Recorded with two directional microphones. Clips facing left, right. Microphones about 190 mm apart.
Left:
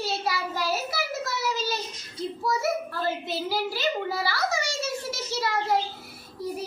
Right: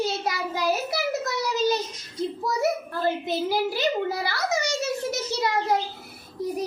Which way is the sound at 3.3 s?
20° right (ahead or behind).